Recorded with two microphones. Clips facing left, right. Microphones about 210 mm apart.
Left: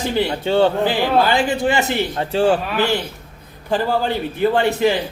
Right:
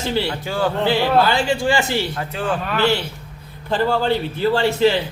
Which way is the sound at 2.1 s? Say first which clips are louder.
Left 7 dB; 30° left (ahead or behind).